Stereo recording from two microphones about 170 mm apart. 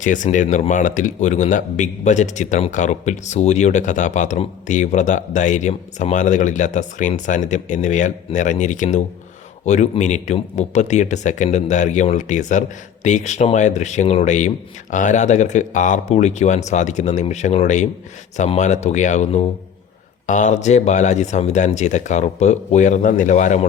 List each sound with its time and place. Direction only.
0.0 s a man's voice: 50° left (ahead or behind)